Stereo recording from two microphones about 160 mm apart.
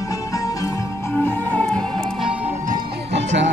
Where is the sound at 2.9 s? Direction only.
90° right.